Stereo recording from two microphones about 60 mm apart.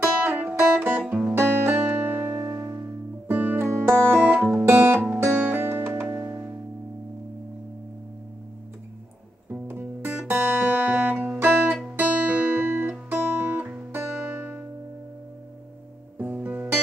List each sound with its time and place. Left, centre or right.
0.0 s music: right
3.3 s music: right
3.5 s music: right
5.0 s music: right
9.5 s music: right
11.3 s music: right
16.4 s music: right